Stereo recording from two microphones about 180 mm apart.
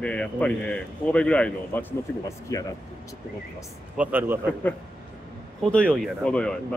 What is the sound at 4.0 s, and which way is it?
Speech, 10° right (ahead or behind).